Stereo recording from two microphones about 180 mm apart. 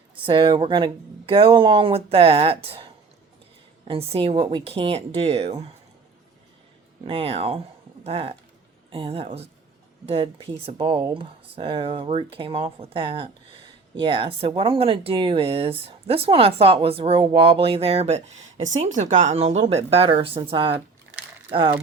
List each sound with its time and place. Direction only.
0.3 s speech: 30° right (ahead or behind)
3.8 s speech: 30° right (ahead or behind)
7.0 s speech: 30° right (ahead or behind)